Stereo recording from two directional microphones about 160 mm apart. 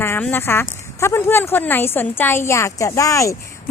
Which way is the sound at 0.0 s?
10° left (ahead or behind).